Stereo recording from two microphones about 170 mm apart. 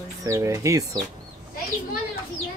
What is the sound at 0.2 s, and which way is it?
Speech, 15° right (ahead or behind).